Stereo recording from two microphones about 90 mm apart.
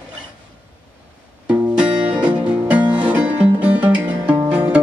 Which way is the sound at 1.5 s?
10° right (ahead or behind).